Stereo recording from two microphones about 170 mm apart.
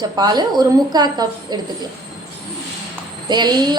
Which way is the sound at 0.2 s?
25° right (ahead or behind).